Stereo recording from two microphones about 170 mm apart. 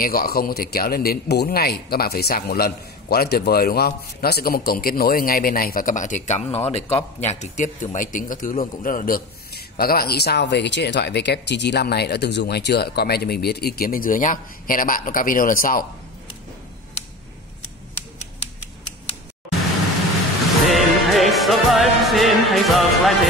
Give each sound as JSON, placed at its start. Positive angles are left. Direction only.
{"t": 0.0, "sound": "a man's voice", "side_deg": 60}
{"t": 20.6, "sound": "music", "side_deg": 0}